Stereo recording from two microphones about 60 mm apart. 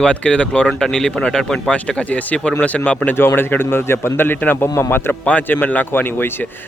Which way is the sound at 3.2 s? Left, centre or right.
Left.